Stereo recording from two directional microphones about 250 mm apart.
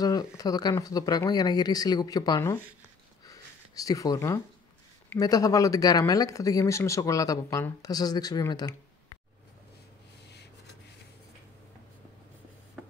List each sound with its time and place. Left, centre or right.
0.0 s speech: centre
3.3 s a sound: centre
5.1 s speech: centre